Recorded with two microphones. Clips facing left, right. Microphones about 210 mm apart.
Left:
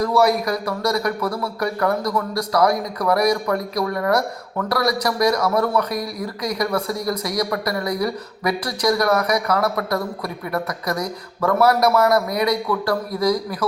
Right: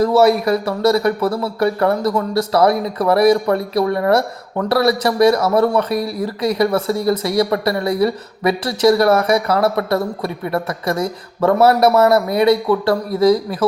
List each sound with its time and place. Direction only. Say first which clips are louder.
0.0 s speech: right 5 dB; 25° right (ahead or behind)